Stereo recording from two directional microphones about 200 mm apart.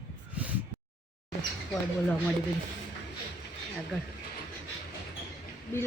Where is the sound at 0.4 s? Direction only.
5° right (ahead or behind).